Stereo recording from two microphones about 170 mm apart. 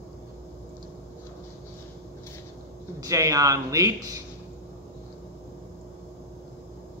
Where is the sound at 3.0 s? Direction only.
20° right (ahead or behind).